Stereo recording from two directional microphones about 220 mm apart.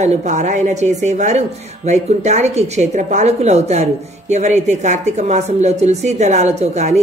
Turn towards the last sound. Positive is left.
turn(degrees=-30)  # may be behind; listen again after turning